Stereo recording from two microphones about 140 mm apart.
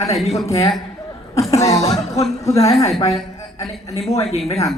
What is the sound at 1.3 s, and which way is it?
Chuckle, 20° left (ahead or behind).